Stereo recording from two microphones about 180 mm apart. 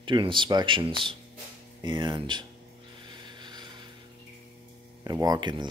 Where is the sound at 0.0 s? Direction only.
25° right (ahead or behind).